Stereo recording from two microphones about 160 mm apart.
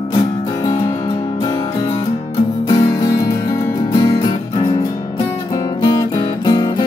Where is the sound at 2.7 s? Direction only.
20° left (ahead or behind).